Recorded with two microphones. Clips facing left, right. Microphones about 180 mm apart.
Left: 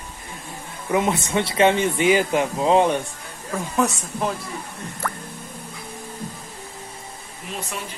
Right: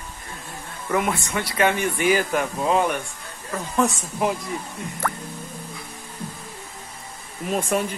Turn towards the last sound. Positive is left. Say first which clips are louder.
# right 9 dB
turn(degrees=-50)  # may be behind; listen again after turning